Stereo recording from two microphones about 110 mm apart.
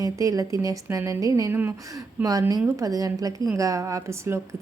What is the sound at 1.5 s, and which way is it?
Speech, 20° right (ahead or behind).